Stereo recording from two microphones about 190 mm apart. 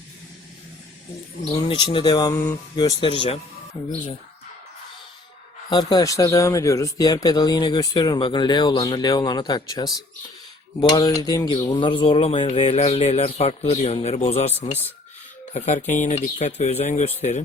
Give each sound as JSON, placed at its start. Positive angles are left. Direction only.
{"t": 1.5, "sound": "speech", "side_deg": 25}
{"t": 2.7, "sound": "speech", "side_deg": 25}
{"t": 5.9, "sound": "speech", "side_deg": 20}